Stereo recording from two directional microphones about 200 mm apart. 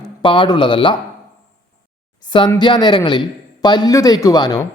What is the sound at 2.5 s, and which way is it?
Speech, 20° left (ahead or behind).